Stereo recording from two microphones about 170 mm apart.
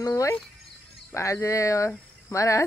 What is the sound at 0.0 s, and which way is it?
Music, 15° left (ahead or behind).